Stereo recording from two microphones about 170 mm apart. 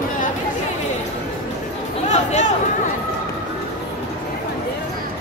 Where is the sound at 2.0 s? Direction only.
45° left (ahead or behind).